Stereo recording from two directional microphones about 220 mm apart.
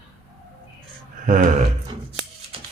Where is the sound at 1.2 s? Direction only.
35° right (ahead or behind).